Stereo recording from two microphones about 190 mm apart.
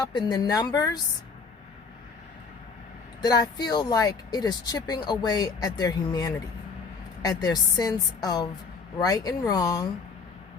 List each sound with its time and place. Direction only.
0.0 s speech: 20° left (ahead or behind)
3.2 s speech: 20° left (ahead or behind)